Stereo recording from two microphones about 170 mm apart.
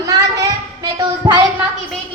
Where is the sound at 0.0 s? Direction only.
20° right (ahead or behind).